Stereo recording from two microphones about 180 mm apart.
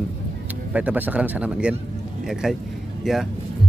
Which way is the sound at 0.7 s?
10° right (ahead or behind).